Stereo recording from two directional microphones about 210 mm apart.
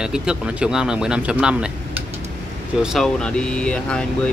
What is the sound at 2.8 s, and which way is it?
Speech, centre (ahead or behind).